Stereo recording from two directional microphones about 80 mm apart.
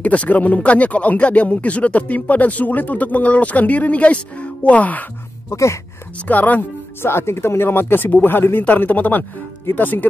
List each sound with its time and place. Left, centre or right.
0.0 s speech: centre
5.5 s speech: left
6.2 s speech: left
7.1 s speech: left